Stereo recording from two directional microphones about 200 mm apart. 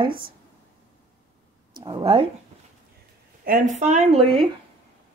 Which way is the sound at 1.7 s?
20° right (ahead or behind).